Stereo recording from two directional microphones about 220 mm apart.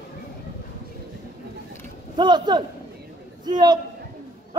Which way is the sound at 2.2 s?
20° right (ahead or behind).